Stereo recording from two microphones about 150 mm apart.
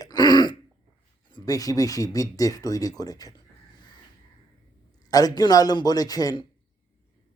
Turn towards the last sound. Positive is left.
turn(degrees=25)  # may be behind; listen again after turning